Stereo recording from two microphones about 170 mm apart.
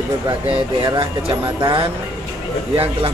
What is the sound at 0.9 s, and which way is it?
Speech, 30° right (ahead or behind).